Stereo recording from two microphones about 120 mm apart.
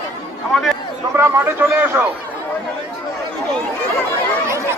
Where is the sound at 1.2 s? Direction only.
20° right (ahead or behind).